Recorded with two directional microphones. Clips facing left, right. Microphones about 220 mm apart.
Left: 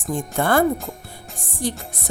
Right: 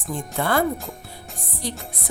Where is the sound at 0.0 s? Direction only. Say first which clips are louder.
Left 3 dB; 45° left (ahead or behind).